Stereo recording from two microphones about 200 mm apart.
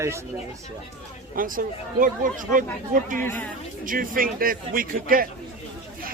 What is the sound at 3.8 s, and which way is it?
Speech, 45° right (ahead or behind).